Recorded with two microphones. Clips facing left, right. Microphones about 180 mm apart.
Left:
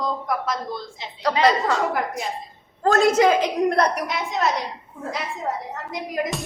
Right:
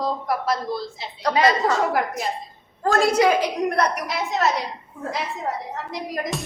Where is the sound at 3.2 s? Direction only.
15° left (ahead or behind).